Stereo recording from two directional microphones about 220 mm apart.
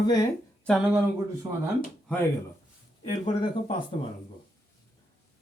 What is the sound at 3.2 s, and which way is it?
Speech, 20° left (ahead or behind).